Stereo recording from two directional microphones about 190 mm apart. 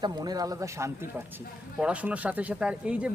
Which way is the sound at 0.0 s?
20° right (ahead or behind).